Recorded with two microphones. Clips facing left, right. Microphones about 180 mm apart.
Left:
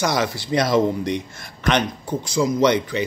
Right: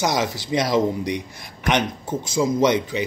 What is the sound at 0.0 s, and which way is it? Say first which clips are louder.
A man's voice: left 1 dB; 20° right (ahead or behind).